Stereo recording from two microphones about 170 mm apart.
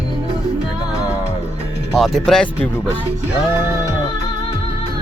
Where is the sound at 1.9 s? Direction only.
Centre (ahead or behind).